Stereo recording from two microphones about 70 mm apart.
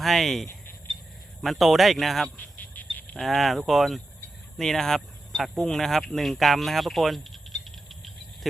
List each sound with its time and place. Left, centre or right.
0.0 s speech: centre
2.3 s a sound: left
3.2 s speech: centre